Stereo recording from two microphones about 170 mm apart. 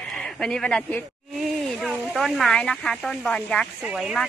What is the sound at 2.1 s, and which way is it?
A woman's voice, centre (ahead or behind).